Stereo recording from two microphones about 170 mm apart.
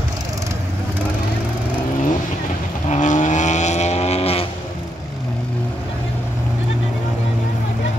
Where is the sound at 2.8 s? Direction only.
45° left (ahead or behind).